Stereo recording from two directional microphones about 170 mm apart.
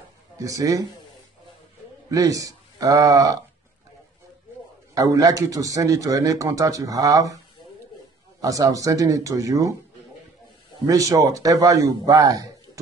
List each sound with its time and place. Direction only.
0.4 s a man's voice: 20° right (ahead or behind)
2.0 s speech: 20° right (ahead or behind)
4.9 s a man's voice: 20° right (ahead or behind)
8.4 s a man's voice: 20° right (ahead or behind)